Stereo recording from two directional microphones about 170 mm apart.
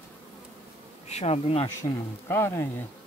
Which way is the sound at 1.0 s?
40° left (ahead or behind).